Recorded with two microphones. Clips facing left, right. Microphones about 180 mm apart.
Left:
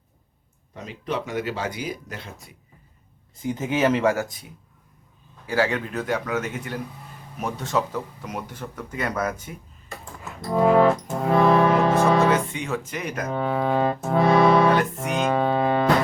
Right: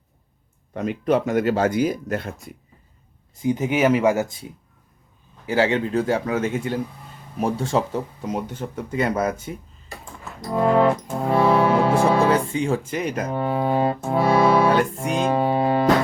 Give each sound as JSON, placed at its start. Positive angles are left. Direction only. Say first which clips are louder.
{"t": 0.7, "sound": "speech", "louder": "right 9 dB", "side_deg": -55}
{"t": 3.4, "sound": "speech", "louder": "right 3 dB", "side_deg": -15}
{"t": 5.5, "sound": "speech", "louder": "right 4 dB", "side_deg": -25}
{"t": 9.4, "sound": "a sound", "louder": "right 6 dB", "side_deg": -30}
{"t": 10.4, "sound": "music", "louder": "left 1 dB", "side_deg": 5}
{"t": 10.8, "sound": "music", "louder": "even", "side_deg": -10}
{"t": 12.0, "sound": "speech", "louder": "right 1 dB", "side_deg": -30}
{"t": 13.3, "sound": "speech", "louder": "even", "side_deg": -10}
{"t": 14.1, "sound": "music", "louder": "left 1 dB", "side_deg": -5}
{"t": 14.7, "sound": "speech", "louder": "right 2 dB", "side_deg": -30}
{"t": 15.3, "sound": "music", "louder": "right 1 dB", "side_deg": -15}